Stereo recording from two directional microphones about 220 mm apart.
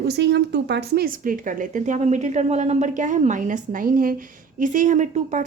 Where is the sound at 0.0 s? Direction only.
50° right (ahead or behind).